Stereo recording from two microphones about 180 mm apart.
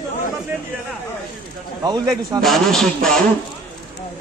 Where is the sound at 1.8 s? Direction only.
25° right (ahead or behind).